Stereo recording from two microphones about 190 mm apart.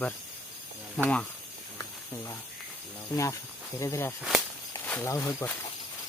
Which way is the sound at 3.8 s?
15° left (ahead or behind).